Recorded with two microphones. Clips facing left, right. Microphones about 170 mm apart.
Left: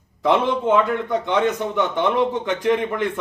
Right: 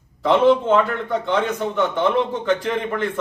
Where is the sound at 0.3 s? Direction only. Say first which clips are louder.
Right 3 dB; 15° left (ahead or behind).